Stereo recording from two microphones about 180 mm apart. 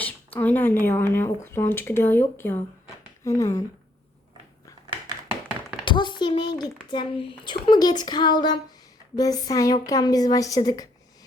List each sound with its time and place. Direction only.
0.0 s speech: 10° left (ahead or behind)
5.8 s a child's voice: 25° left (ahead or behind)